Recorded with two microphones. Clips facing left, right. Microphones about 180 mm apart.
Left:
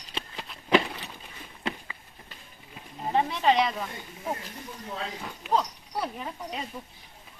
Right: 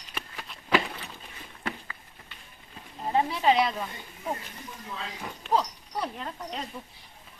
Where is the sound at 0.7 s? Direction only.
15° left (ahead or behind).